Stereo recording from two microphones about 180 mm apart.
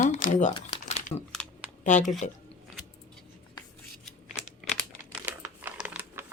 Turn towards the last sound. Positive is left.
turn(degrees=-10)  # may be behind; listen again after turning